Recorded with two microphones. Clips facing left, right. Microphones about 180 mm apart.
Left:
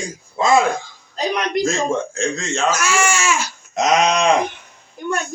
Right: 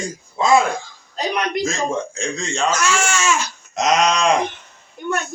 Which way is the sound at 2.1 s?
Centre (ahead or behind).